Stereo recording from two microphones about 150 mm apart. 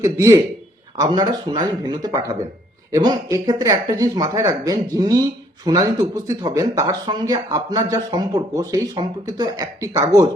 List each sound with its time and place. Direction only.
0.0 s speech: 20° right (ahead or behind)